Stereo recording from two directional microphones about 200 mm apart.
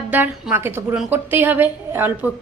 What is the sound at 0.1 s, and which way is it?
A woman's voice, 10° right (ahead or behind).